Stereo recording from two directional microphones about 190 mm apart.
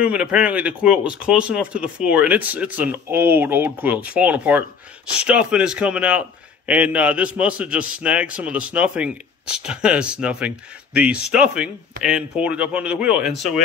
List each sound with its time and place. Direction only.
0.0 s a man's voice: 5° right (ahead or behind)